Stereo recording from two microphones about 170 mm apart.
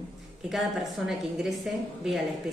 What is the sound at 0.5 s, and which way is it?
A woman's voice, centre (ahead or behind).